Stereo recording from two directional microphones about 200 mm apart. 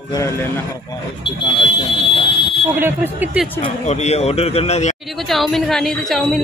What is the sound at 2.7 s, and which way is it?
Speech, 10° right (ahead or behind).